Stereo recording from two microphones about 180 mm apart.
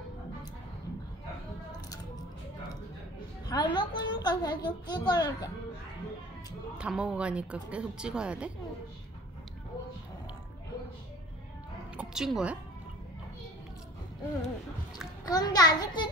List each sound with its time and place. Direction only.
3.4 s a woman's voice: 25° left (ahead or behind)
6.8 s a woman's voice: 5° right (ahead or behind)
12.0 s speech: 5° right (ahead or behind)
15.2 s a woman's voice: 20° left (ahead or behind)